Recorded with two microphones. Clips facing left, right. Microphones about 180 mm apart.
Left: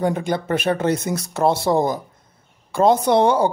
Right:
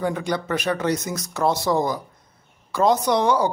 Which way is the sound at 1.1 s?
30° left (ahead or behind).